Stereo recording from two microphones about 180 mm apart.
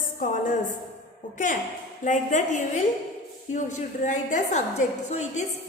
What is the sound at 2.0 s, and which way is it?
A woman's voice, 45° left (ahead or behind).